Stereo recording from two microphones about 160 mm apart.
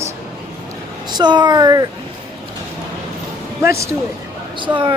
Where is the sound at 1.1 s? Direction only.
25° right (ahead or behind).